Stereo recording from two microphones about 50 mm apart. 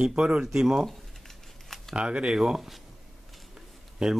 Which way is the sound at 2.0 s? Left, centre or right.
Right.